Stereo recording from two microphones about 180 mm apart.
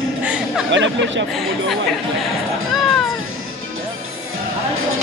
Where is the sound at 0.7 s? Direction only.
90° right.